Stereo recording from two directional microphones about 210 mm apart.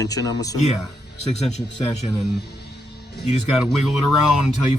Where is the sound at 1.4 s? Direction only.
30° left (ahead or behind).